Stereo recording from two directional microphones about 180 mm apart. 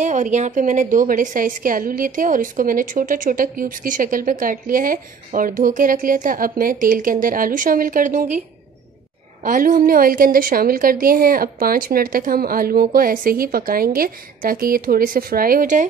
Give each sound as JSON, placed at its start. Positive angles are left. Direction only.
{"t": 0.0, "sound": "a woman's voice", "side_deg": -40}
{"t": 9.4, "sound": "a woman's voice", "side_deg": -50}